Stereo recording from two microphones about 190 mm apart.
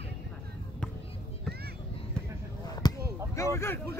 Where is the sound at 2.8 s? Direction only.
20° left (ahead or behind).